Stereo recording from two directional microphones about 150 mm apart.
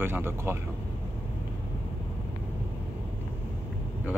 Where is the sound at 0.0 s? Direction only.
15° right (ahead or behind).